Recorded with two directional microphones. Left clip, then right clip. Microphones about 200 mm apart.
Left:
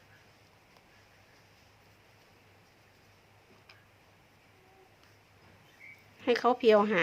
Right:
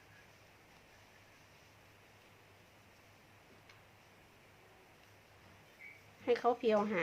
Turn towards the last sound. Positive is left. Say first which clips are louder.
# left 8 dB
turn(degrees=35)  # may be behind; listen again after turning